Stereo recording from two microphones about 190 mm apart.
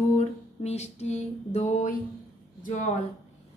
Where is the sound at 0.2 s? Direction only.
35° left (ahead or behind).